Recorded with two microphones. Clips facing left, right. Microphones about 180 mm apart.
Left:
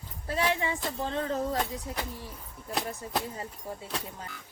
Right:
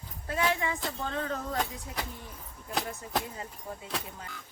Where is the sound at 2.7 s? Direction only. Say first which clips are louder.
Even; centre (ahead or behind).